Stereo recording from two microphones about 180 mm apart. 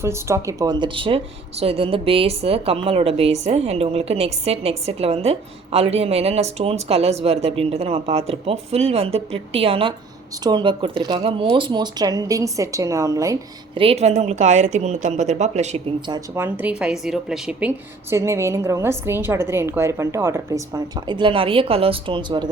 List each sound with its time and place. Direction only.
0.0 s speech: 15° right (ahead or behind)
13.7 s speech: 35° right (ahead or behind)
16.0 s speech: 25° right (ahead or behind)
16.4 s speech: 10° right (ahead or behind)
18.1 s a woman's voice: 15° right (ahead or behind)